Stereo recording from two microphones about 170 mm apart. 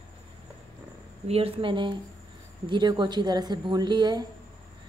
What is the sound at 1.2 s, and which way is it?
A woman's voice, 35° right (ahead or behind).